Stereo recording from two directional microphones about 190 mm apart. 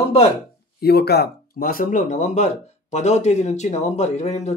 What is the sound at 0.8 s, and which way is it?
Speech, 55° left (ahead or behind).